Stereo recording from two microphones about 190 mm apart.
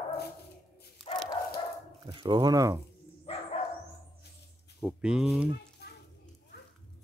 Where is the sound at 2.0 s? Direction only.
25° right (ahead or behind).